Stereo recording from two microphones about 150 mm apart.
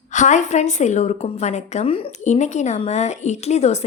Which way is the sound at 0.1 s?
55° left (ahead or behind).